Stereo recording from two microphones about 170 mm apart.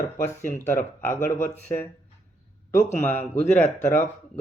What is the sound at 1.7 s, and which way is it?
Speech, 30° left (ahead or behind).